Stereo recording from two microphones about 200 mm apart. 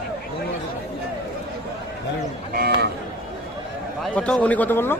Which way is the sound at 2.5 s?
50° right (ahead or behind).